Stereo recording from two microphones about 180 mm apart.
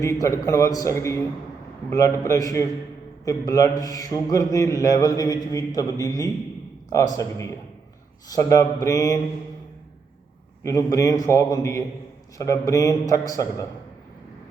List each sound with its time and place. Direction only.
0.0 s a man's voice: 15° left (ahead or behind)
10.6 s a man's voice: 15° left (ahead or behind)